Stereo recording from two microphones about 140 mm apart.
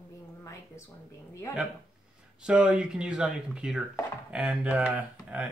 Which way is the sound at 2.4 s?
5° right (ahead or behind).